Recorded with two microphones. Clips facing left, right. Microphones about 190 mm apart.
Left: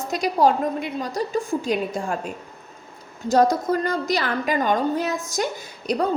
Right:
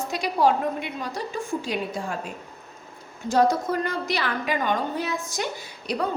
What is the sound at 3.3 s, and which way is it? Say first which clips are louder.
A woman's voice: left 3 dB; 40° left (ahead or behind).